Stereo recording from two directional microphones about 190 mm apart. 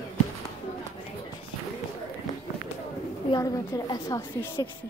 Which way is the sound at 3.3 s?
20° left (ahead or behind).